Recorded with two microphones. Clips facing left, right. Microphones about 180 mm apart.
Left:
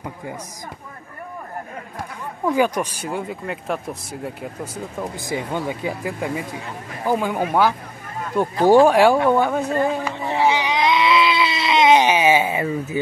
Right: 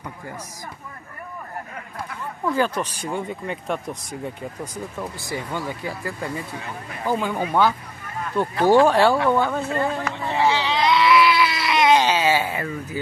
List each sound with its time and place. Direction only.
2.4 s speech: 15° left (ahead or behind)
5.0 s speech: 20° left (ahead or behind)
8.6 s a sound: 15° left (ahead or behind)